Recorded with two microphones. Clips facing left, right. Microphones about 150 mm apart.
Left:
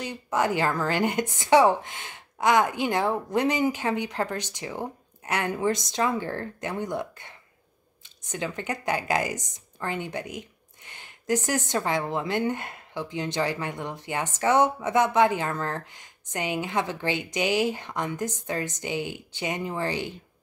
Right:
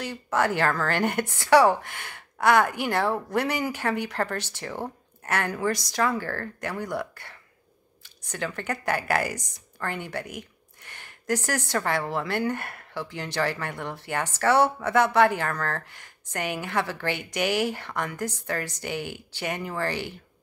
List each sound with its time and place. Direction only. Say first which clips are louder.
0.0 s speech: right 1 dB; 15° left (ahead or behind)